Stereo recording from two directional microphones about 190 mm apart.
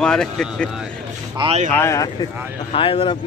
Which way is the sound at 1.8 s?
15° left (ahead or behind).